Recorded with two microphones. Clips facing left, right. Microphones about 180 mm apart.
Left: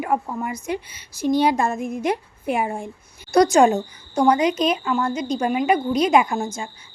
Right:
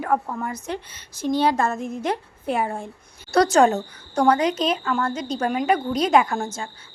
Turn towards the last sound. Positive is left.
turn(degrees=10)  # may be behind; listen again after turning